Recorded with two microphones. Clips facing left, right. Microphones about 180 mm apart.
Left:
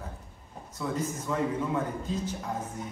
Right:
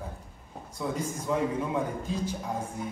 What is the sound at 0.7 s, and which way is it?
A man's voice, 10° right (ahead or behind).